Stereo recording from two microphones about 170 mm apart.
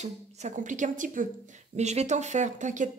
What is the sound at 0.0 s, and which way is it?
A woman's voice, 45° right (ahead or behind).